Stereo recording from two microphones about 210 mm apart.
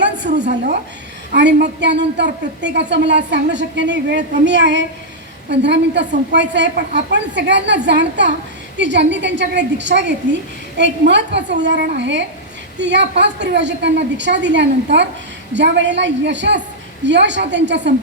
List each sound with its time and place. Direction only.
0.4 s a woman's voice: 45° right (ahead or behind)